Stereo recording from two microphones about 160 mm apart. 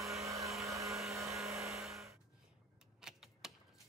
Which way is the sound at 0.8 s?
Centre (ahead or behind).